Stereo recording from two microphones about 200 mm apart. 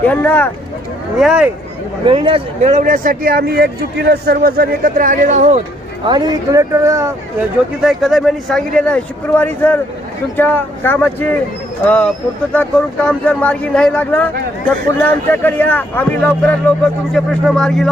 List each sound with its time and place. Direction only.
0.0 s speech: 10° left (ahead or behind)
1.2 s speech: 5° right (ahead or behind)
2.0 s a man's voice: 25° right (ahead or behind)
6.1 s speech: 20° right (ahead or behind)
7.8 s speech: centre (ahead or behind)